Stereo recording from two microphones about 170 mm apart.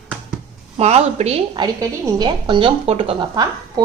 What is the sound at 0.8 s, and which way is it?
Speech, 40° right (ahead or behind).